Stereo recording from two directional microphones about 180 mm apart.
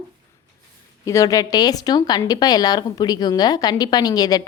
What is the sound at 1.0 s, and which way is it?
A woman's voice, 20° left (ahead or behind).